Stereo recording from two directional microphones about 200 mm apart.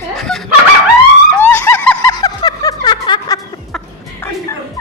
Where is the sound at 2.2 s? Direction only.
20° left (ahead or behind).